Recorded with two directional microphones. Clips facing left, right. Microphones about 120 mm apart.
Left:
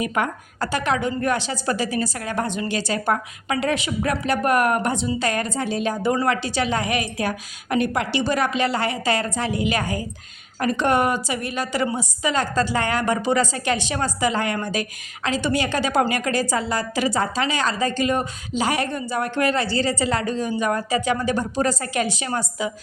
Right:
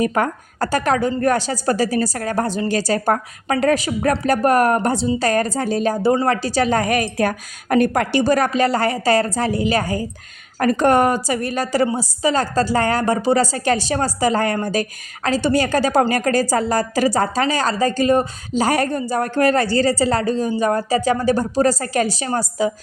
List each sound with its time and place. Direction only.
0.0 s a woman's voice: 40° right (ahead or behind)